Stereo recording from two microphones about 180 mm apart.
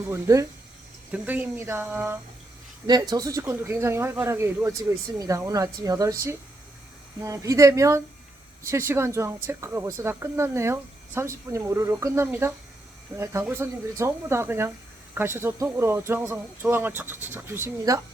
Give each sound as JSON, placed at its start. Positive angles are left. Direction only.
{"t": 0.1, "sound": "speech", "side_deg": -15}
{"t": 2.8, "sound": "speech", "side_deg": -20}
{"t": 7.3, "sound": "speech", "side_deg": -15}